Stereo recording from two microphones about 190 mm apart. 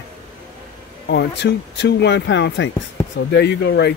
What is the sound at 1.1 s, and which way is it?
Speech, 65° left (ahead or behind).